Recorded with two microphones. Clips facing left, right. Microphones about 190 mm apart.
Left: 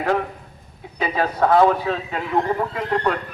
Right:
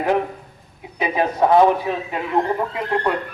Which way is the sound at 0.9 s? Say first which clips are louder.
Right 2 dB; 15° right (ahead or behind).